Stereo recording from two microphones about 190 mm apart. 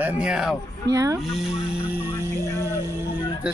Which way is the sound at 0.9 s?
20° right (ahead or behind).